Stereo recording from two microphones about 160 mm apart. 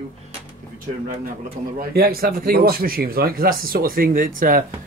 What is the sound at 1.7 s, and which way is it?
Speech, 70° right (ahead or behind).